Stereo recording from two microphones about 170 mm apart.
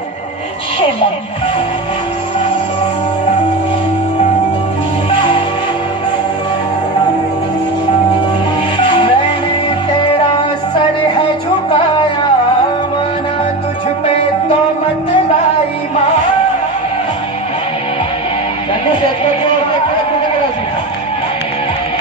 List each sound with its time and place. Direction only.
8.8 s music: 30° left (ahead or behind)